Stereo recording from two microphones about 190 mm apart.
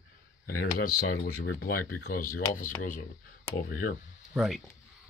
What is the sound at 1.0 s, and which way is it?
Speech, 50° left (ahead or behind).